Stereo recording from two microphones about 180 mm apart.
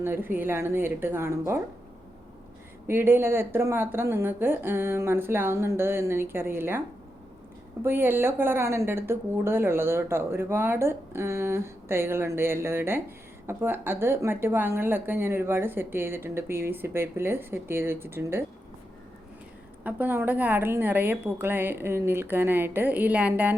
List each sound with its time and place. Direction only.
0.0 s a woman's voice: 10° right (ahead or behind)
2.8 s a woman's voice: 10° right (ahead or behind)
7.9 s a woman's voice: 10° right (ahead or behind)
19.8 s a woman's voice: 10° right (ahead or behind)